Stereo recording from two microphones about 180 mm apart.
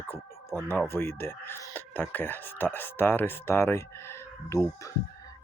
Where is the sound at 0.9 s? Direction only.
15° left (ahead or behind).